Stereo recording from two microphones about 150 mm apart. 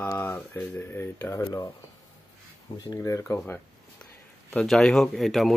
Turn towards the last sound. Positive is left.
turn(degrees=0)  # may be behind; listen again after turning